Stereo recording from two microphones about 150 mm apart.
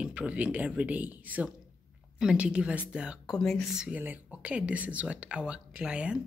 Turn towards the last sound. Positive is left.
turn(degrees=-5)  # may be behind; listen again after turning